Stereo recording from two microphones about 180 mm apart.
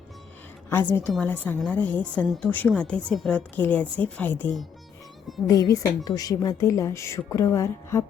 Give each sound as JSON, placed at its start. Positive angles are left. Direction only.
{"t": 0.7, "sound": "a woman's voice", "side_deg": 10}
{"t": 5.5, "sound": "a woman's voice", "side_deg": 20}